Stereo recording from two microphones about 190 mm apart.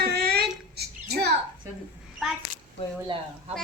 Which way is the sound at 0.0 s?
55° right (ahead or behind).